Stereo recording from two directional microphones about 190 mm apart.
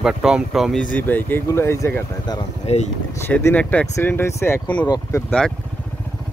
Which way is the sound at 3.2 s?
10° left (ahead or behind).